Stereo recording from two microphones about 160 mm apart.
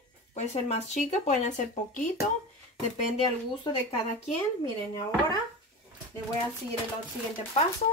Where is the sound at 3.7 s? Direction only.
30° left (ahead or behind).